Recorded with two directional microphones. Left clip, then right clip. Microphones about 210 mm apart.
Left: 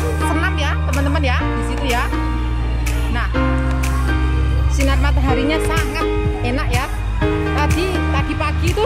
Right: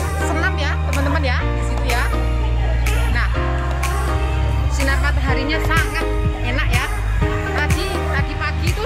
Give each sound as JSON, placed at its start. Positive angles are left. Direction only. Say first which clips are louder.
{"t": 0.4, "sound": "music", "louder": "even", "side_deg": 10}
{"t": 4.8, "sound": "speech", "louder": "left 1 dB", "side_deg": 15}
{"t": 7.5, "sound": "music", "louder": "left 2 dB", "side_deg": 15}